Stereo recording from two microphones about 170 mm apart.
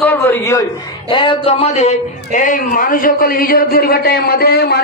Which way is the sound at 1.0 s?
30° left (ahead or behind).